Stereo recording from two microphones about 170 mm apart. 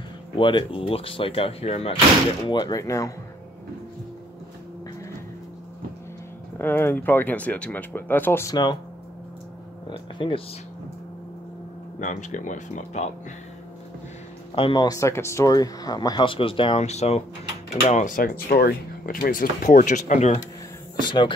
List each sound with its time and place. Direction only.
0.4 s speech: 30° left (ahead or behind)
2.4 s speech: 25° left (ahead or behind)
6.6 s speech: 10° left (ahead or behind)
9.8 s speech: 30° left (ahead or behind)
12.0 s speech: 45° left (ahead or behind)
14.5 s speech: 30° left (ahead or behind)
21.0 s speech: 25° left (ahead or behind)